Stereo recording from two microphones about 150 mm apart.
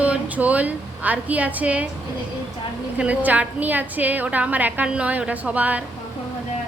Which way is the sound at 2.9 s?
10° right (ahead or behind).